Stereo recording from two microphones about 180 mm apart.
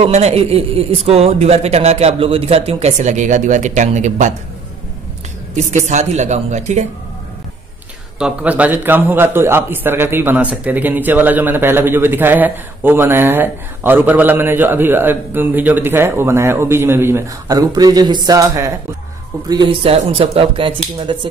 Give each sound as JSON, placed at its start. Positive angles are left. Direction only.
{"t": 0.0, "sound": "speech", "side_deg": -35}
{"t": 5.6, "sound": "speech", "side_deg": -40}
{"t": 8.2, "sound": "a man's voice", "side_deg": -5}